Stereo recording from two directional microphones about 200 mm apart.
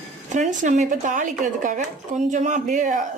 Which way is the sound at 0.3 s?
40° right (ahead or behind).